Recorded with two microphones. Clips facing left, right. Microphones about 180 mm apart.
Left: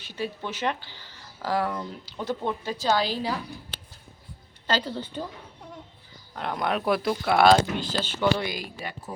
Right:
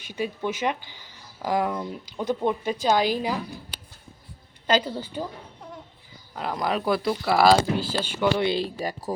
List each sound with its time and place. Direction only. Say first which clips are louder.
0.0 s speech: right 4 dB; 15° right (ahead or behind)
4.6 s speech: right 4 dB; 10° right (ahead or behind)
6.3 s speech: right 1 dB; 5° right (ahead or behind)
8.4 s speech: right 8 dB; 30° right (ahead or behind)